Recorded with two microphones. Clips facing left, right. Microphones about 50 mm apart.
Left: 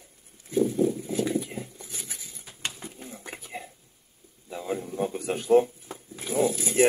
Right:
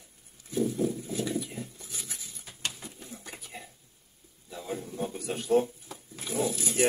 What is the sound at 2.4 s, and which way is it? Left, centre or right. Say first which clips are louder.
Pigeon: left 1 dB; centre.